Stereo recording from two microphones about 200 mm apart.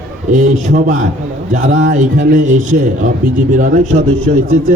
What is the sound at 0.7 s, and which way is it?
A man's voice, 40° right (ahead or behind).